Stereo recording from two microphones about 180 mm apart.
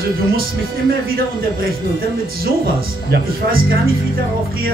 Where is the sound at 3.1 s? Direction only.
55° right (ahead or behind).